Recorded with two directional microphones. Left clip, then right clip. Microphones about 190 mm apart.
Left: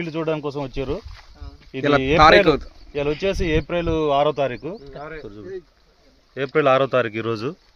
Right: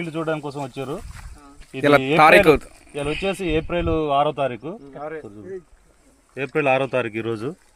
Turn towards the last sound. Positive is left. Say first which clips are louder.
# left 1 dB
turn(degrees=30)  # may be behind; listen again after turning